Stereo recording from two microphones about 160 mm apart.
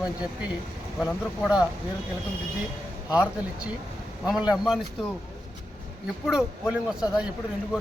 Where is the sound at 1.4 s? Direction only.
5° right (ahead or behind).